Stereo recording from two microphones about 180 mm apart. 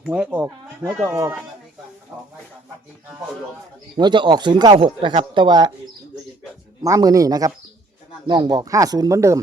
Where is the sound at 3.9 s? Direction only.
25° right (ahead or behind).